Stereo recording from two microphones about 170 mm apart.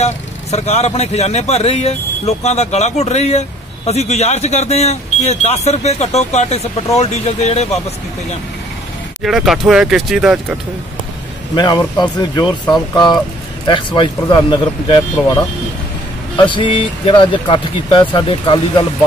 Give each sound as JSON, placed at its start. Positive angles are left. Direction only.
{"t": 0.0, "sound": "speech", "side_deg": 40}
{"t": 9.2, "sound": "speech", "side_deg": 0}
{"t": 11.5, "sound": "speech", "side_deg": 25}
{"t": 16.4, "sound": "speech", "side_deg": 30}